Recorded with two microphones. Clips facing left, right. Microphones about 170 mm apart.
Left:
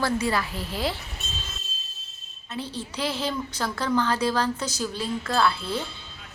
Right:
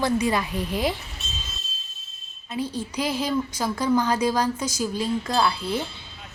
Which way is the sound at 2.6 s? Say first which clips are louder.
Right 4 dB; 10° right (ahead or behind).